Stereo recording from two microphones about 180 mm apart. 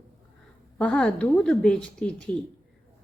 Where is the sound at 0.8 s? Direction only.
5° left (ahead or behind).